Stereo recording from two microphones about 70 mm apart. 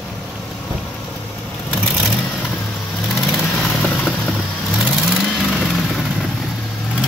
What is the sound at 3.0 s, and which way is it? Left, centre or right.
Vehicle, centre.